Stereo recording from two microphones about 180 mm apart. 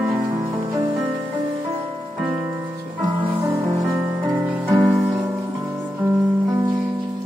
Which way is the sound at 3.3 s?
15° right (ahead or behind).